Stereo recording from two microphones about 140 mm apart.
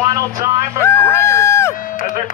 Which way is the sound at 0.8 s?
15° left (ahead or behind).